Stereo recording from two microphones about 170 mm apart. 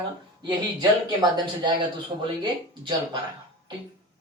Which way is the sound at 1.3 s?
25° right (ahead or behind).